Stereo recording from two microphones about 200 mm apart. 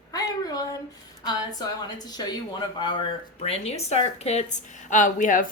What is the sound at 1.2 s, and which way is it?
A woman's voice, 20° left (ahead or behind).